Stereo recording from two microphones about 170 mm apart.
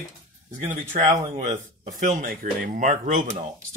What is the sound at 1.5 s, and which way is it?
Speech, 50° right (ahead or behind).